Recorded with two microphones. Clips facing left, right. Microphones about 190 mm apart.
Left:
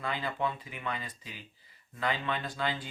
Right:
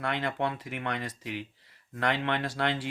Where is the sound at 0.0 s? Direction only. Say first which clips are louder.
Right 3 dB; 75° right (ahead or behind).